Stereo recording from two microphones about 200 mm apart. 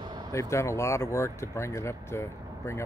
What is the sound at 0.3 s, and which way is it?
Speech, 15° left (ahead or behind).